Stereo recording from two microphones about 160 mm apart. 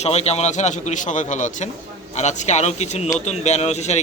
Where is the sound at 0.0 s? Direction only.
40° left (ahead or behind).